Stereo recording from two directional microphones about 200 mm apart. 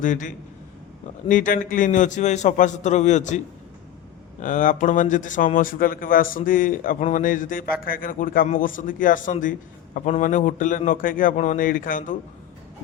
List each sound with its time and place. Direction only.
0.0 s a man's voice: 40° left (ahead or behind)